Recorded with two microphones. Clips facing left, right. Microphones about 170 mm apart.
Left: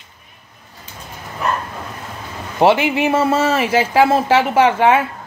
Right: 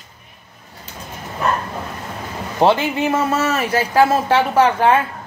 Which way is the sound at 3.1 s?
25° left (ahead or behind).